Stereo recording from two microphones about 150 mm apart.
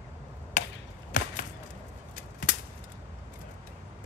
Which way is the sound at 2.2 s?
60° left (ahead or behind).